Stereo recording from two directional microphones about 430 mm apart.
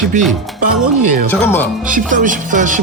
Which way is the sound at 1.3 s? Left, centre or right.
Centre.